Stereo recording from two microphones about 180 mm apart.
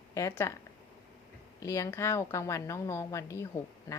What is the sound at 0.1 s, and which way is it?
Speech, 15° left (ahead or behind).